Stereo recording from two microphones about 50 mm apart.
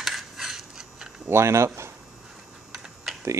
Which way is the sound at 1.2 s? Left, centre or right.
Right.